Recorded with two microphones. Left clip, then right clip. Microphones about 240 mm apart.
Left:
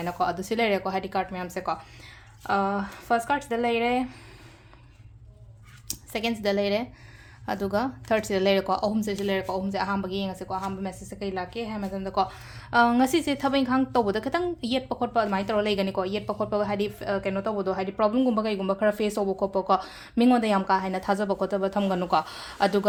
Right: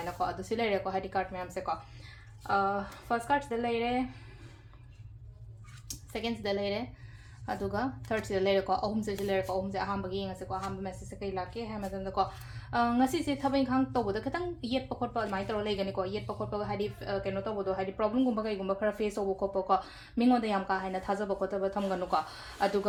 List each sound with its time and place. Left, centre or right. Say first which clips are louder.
0.0 s speech: left 7 dB; left
5.9 s speech: left 7 dB; left